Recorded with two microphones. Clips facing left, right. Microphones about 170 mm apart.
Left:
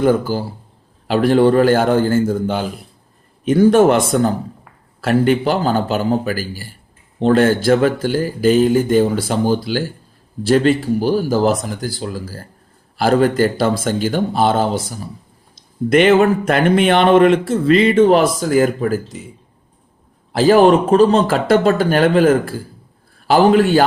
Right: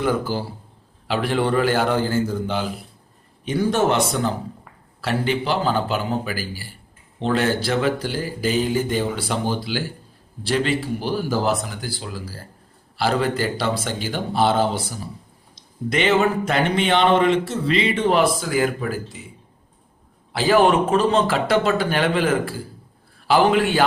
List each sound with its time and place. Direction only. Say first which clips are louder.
0.0 s speech: left 7 dB; 45° left (ahead or behind)
20.3 s a man's voice: left 6 dB; 40° left (ahead or behind)